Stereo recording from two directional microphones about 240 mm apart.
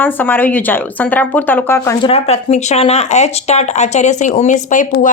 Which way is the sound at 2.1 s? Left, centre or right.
Left.